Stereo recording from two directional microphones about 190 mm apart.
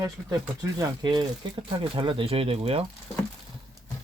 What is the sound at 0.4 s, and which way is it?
Speech, 15° right (ahead or behind).